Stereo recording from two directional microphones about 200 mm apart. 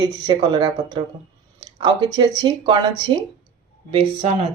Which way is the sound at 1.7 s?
25° right (ahead or behind).